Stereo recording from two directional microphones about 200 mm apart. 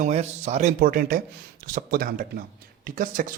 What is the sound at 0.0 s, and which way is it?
Speech, 35° right (ahead or behind).